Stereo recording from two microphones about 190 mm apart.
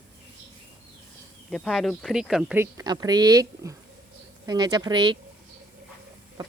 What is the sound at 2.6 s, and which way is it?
Speech, 20° right (ahead or behind).